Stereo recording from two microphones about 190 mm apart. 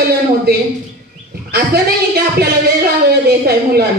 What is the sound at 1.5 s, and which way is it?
Speech, 55° right (ahead or behind).